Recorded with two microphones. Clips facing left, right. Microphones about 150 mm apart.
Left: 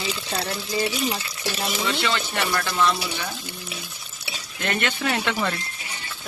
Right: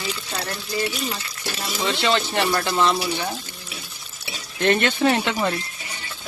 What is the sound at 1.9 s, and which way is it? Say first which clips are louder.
Speech: right 8 dB; 25° right (ahead or behind).